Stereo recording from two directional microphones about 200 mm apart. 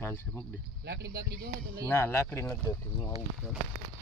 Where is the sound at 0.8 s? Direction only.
55° right (ahead or behind).